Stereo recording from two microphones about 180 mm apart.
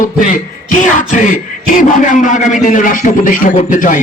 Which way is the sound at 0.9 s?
45° left (ahead or behind).